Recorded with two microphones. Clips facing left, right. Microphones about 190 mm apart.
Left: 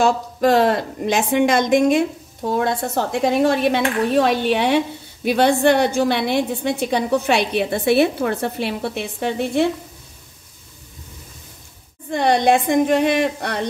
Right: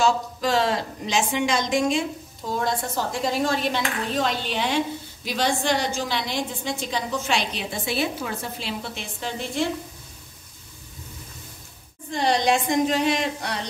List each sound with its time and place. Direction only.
0.0 s a woman's voice: 55° left (ahead or behind)
12.1 s a woman's voice: 55° left (ahead or behind)